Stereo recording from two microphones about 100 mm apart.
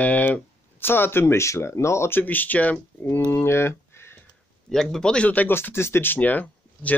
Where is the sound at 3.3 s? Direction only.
25° left (ahead or behind).